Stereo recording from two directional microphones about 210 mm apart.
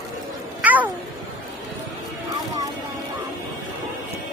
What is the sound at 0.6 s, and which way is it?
Cat, 5° right (ahead or behind).